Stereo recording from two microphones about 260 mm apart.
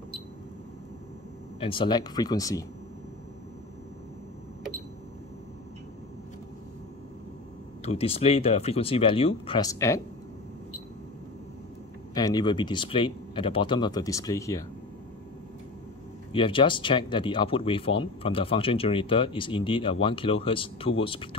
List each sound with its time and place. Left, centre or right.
1.6 s speech: centre
7.8 s speech: left
12.1 s speech: centre
16.3 s speech: centre